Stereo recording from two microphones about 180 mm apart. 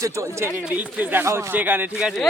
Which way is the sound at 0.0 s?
15° right (ahead or behind).